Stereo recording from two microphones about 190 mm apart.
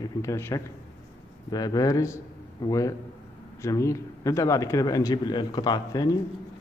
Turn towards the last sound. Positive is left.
turn(degrees=20)  # may be behind; listen again after turning